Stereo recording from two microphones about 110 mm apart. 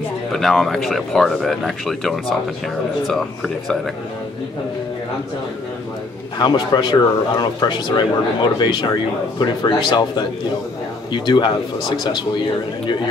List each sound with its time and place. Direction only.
0.3 s speech: centre (ahead or behind)
6.3 s speech: 40° left (ahead or behind)